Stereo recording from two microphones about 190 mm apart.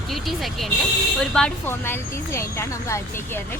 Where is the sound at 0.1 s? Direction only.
Centre (ahead or behind).